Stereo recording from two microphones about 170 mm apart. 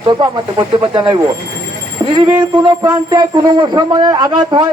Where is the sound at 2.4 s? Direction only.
25° right (ahead or behind).